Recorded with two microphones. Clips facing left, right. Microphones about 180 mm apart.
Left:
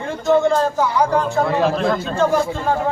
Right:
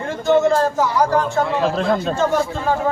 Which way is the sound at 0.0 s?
Centre (ahead or behind).